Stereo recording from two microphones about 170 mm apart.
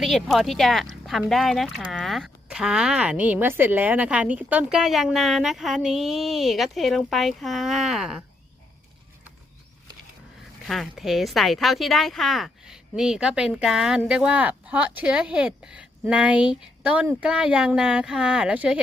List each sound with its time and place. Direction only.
0.0 s speech: centre (ahead or behind)
10.7 s speech: centre (ahead or behind)